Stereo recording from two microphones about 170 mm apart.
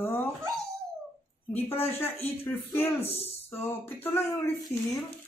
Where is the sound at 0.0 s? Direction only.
15° left (ahead or behind).